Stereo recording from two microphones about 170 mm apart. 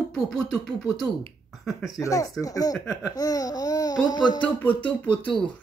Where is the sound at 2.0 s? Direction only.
20° left (ahead or behind).